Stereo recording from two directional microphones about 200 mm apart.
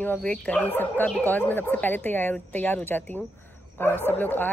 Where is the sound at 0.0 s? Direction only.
5° left (ahead or behind).